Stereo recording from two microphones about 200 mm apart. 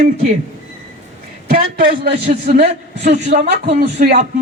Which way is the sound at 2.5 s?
45° right (ahead or behind).